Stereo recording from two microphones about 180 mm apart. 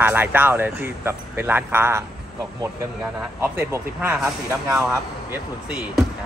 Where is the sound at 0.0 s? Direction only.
10° right (ahead or behind).